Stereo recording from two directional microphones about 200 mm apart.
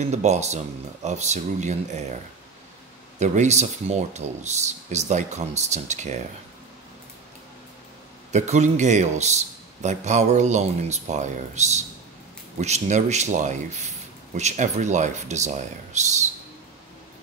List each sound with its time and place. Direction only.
0.0 s speech: 35° right (ahead or behind)
3.2 s speech: 35° right (ahead or behind)
8.3 s speech: 35° right (ahead or behind)